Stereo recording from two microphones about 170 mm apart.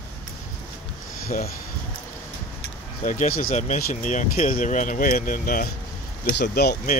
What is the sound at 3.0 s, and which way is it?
Speech, 50° left (ahead or behind).